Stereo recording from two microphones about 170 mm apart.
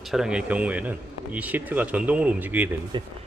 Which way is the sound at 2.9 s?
25° right (ahead or behind).